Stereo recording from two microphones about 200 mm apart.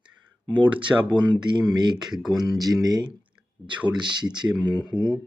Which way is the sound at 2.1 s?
Centre (ahead or behind).